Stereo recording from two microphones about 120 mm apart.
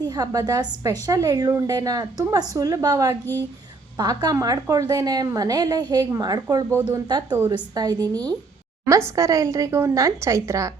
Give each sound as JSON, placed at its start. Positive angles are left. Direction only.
{"t": 0.0, "sound": "a woman's voice", "side_deg": -35}